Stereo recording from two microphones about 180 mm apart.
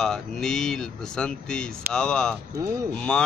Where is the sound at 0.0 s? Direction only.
Centre (ahead or behind).